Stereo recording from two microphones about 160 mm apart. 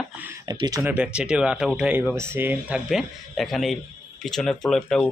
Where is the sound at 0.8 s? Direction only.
10° right (ahead or behind).